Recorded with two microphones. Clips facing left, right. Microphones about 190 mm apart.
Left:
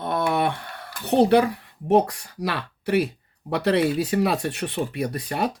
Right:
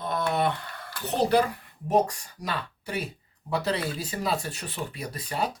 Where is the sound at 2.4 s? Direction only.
70° left (ahead or behind).